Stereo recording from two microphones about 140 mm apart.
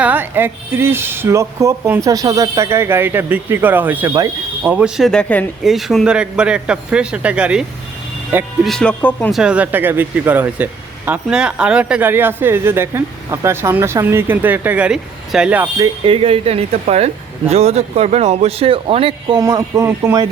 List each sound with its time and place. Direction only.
0.0 s speech: 15° right (ahead or behind)
5.0 s speech: 10° left (ahead or behind); by 7.6 s 10° right (ahead or behind)
8.6 s speech: 5° left (ahead or behind)
9.3 s speech: 5° right (ahead or behind)
16.0 s speech: 40° right (ahead or behind)
19.4 s speech: 25° right (ahead or behind)